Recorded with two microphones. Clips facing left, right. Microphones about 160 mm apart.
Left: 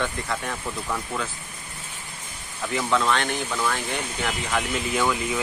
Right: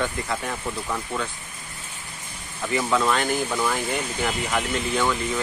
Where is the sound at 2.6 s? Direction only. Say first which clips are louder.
Right 1 dB; 5° right (ahead or behind).